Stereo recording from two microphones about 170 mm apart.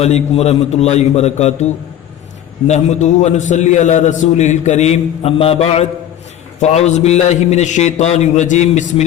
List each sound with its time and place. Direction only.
0.0 s a man's voice: 40° left (ahead or behind)